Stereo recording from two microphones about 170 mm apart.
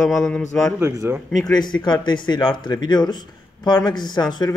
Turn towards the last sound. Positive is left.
turn(degrees=25)  # may be behind; listen again after turning